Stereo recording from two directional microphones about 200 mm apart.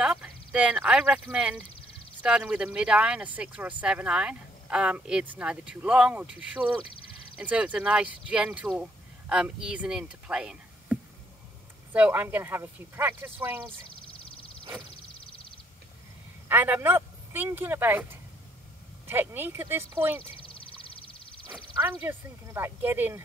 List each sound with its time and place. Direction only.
0.0 s speech: 5° right (ahead or behind)
16.4 s speech: 10° right (ahead or behind)
20.2 s a sound: 25° left (ahead or behind)
21.7 s speech: 10° right (ahead or behind)